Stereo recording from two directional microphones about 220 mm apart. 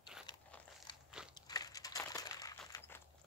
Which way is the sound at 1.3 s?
15° left (ahead or behind).